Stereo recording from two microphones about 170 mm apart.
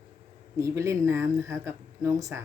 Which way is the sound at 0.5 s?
15° right (ahead or behind).